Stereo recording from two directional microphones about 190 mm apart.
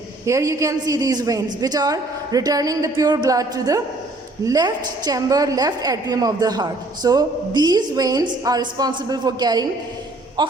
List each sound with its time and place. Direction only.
0.3 s a woman's voice: 15° right (ahead or behind)